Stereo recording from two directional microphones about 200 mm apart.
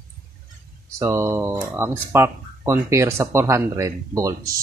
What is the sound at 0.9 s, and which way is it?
Speech, 15° right (ahead or behind).